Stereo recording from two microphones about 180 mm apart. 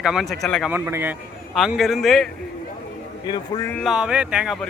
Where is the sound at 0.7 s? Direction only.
10° right (ahead or behind).